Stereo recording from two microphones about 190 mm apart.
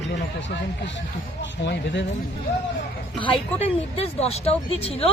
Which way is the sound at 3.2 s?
30° left (ahead or behind).